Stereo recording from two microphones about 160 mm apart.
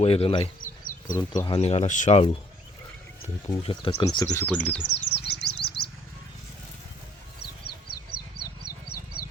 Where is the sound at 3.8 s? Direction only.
35° left (ahead or behind).